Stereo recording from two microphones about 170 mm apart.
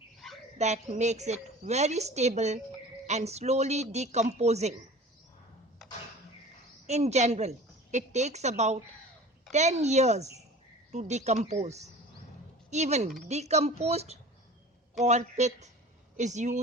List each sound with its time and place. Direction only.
0.2 s a sound: centre (ahead or behind)
0.6 s a woman's voice: 40° right (ahead or behind)
6.8 s a woman's voice: 40° right (ahead or behind)